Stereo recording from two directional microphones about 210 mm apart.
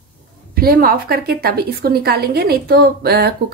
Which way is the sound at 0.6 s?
45° right (ahead or behind).